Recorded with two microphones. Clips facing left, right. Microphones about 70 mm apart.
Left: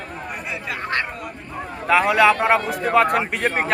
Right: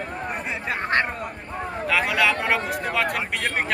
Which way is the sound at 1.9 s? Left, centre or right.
Left.